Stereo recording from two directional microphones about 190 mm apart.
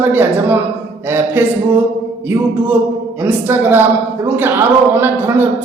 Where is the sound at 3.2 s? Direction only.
10° right (ahead or behind).